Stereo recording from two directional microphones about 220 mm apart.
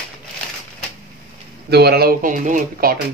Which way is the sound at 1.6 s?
45° right (ahead or behind).